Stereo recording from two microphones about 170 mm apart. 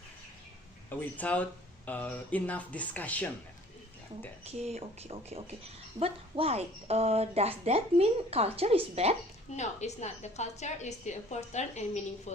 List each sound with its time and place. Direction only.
0.9 s speech: 10° left (ahead or behind)
4.4 s a woman's voice: 40° right (ahead or behind)
9.6 s a woman's voice: 40° left (ahead or behind)